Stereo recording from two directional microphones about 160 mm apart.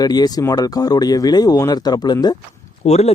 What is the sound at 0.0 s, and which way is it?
Speech, 25° left (ahead or behind).